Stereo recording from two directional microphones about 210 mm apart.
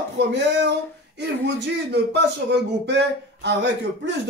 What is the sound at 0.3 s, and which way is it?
Speech, 55° right (ahead or behind).